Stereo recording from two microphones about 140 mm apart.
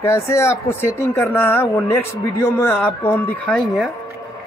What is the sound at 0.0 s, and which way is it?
Speech, 20° left (ahead or behind).